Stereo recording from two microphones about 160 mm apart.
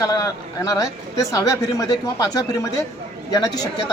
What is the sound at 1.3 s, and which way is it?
A woman's voice, 20° left (ahead or behind).